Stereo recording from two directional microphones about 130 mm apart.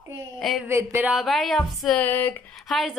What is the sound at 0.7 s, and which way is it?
Speech, 15° right (ahead or behind).